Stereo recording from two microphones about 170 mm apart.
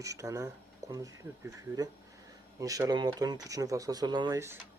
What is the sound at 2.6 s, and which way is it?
Speech, 20° right (ahead or behind).